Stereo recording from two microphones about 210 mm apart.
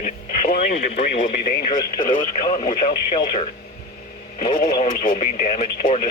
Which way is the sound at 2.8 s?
25° left (ahead or behind).